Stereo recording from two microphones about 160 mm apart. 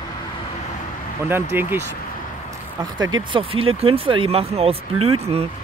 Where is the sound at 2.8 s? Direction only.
30° right (ahead or behind).